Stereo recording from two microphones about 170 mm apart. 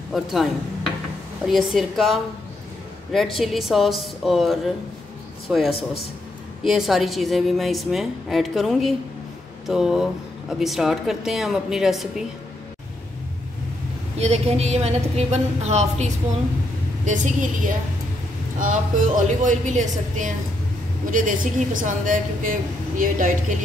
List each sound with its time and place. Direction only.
0.1 s a woman's voice: centre (ahead or behind)
14.1 s a woman's voice: 40° right (ahead or behind)